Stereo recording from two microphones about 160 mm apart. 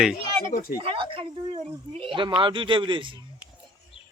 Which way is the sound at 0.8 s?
35° right (ahead or behind).